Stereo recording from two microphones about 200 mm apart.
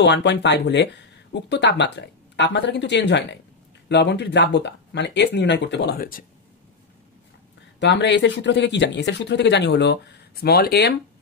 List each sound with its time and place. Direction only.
0.0 s speech: 60° left (ahead or behind)
7.8 s speech: 60° left (ahead or behind)